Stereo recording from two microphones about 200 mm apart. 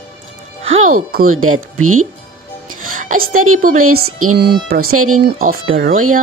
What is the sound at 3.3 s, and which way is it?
Speech, 90° right.